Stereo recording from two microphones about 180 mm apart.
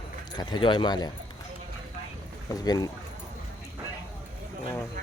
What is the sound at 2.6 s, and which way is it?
Speech, 20° left (ahead or behind).